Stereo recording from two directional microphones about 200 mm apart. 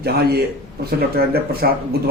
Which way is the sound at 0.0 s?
50° right (ahead or behind).